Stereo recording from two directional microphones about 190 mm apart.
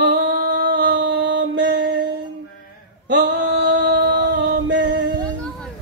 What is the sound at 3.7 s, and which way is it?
Music, 65° right (ahead or behind).